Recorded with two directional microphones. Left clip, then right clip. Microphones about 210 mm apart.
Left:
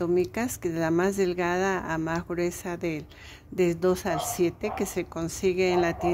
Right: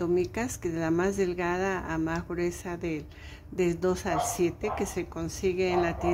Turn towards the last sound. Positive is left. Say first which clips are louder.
# left 3 dB
turn(degrees=35)  # may be behind; listen again after turning